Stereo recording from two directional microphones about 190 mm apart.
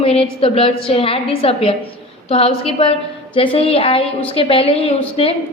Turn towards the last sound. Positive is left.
turn(degrees=30)  # may be behind; listen again after turning